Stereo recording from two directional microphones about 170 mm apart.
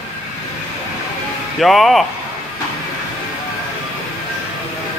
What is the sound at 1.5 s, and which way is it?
Speech, centre (ahead or behind).